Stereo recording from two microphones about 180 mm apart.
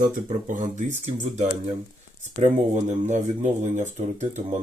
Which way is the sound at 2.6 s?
40° right (ahead or behind).